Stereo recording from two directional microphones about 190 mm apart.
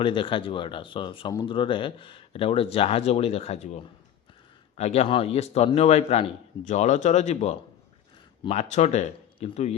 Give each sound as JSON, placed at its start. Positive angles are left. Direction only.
{"t": 0.0, "sound": "speech", "side_deg": 25}
{"t": 4.8, "sound": "a man's voice", "side_deg": 35}